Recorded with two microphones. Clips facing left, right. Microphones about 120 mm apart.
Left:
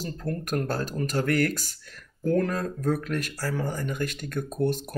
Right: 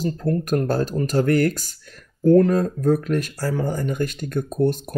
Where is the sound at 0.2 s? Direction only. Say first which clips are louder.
Right 6 dB; 25° right (ahead or behind).